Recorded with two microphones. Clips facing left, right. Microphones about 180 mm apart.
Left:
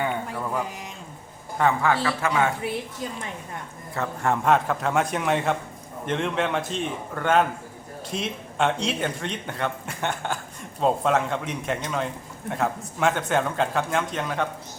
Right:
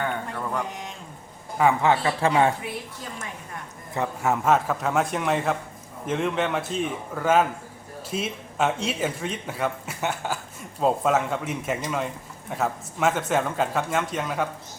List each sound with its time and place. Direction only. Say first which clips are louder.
0.0 s music: left 1 dB; 10° left (ahead or behind)
1.8 s a man's voice: right 2 dB; 25° right (ahead or behind)
4.2 s speech: left 1 dB; 5° right (ahead or behind)